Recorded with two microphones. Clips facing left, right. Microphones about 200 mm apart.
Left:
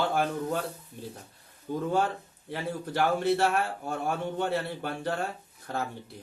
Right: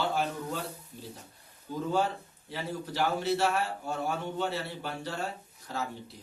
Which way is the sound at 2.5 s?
55° left (ahead or behind).